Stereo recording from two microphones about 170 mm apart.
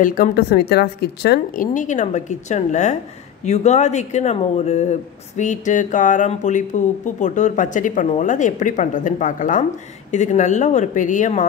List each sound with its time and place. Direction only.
0.0 s a woman's voice: 55° left (ahead or behind); by 1.7 s 70° left (ahead or behind)
1.7 s speech: 45° left (ahead or behind)